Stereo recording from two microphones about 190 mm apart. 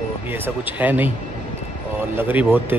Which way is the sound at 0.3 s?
10° right (ahead or behind).